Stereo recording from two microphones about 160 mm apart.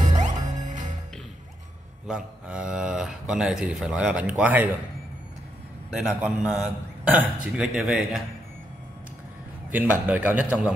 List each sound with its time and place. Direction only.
0.2 s music: 50° right (ahead or behind)
2.0 s speech: 5° right (ahead or behind)
5.9 s speech: centre (ahead or behind)
9.7 s a man's voice: 10° right (ahead or behind)